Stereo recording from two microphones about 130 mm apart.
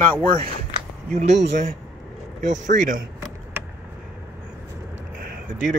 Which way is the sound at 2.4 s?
70° right (ahead or behind).